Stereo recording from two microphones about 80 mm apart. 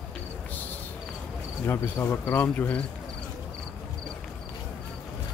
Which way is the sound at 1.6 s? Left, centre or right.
Left.